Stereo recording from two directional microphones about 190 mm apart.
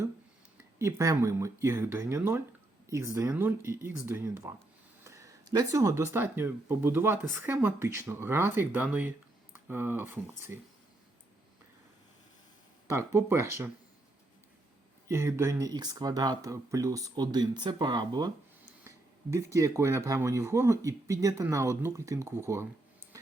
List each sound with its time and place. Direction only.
0.8 s speech: 15° right (ahead or behind)
12.9 s speech: 15° right (ahead or behind)
15.0 s speech: 15° right (ahead or behind)